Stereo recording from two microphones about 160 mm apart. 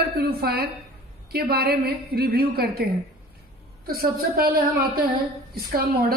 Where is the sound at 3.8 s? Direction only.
70° right (ahead or behind).